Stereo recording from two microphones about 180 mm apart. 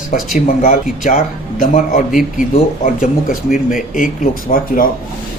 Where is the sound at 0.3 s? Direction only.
50° left (ahead or behind).